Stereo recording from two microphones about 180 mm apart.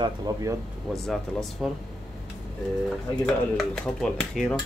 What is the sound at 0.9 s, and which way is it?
Speech, centre (ahead or behind).